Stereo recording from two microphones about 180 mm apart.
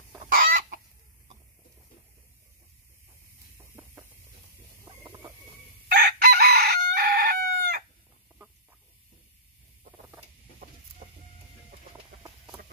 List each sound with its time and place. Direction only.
0.3 s chicken: 50° right (ahead or behind)
5.9 s chicken: 60° right (ahead or behind)